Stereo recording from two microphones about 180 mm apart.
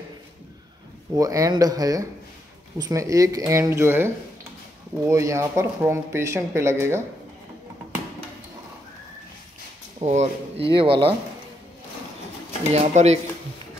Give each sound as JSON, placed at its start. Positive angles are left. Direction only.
{"t": 1.1, "sound": "speech", "side_deg": -20}
{"t": 9.9, "sound": "speech", "side_deg": -40}
{"t": 12.7, "sound": "speech", "side_deg": -40}